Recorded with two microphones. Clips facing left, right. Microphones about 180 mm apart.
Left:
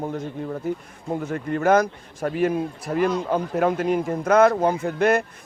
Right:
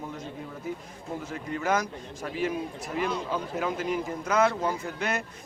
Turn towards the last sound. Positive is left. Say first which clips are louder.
# left 11 dB
turn(degrees=55)  # may be behind; listen again after turning